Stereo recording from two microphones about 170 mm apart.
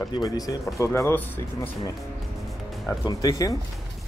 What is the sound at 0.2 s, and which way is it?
Speech, 20° left (ahead or behind).